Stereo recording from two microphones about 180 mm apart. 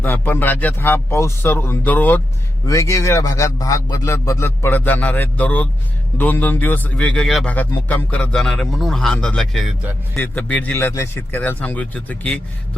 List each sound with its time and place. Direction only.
0.0 s a man's voice: 10° left (ahead or behind)